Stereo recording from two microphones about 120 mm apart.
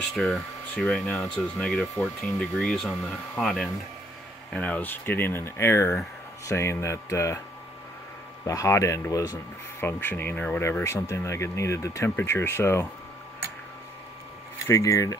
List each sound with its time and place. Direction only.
0.0 s speech: centre (ahead or behind); by 7.3 s 25° left (ahead or behind)
8.5 s speech: 25° left (ahead or behind)
14.7 s speech: 25° left (ahead or behind)